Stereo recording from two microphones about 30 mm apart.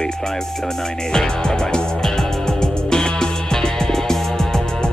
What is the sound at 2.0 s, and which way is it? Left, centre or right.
Music, centre.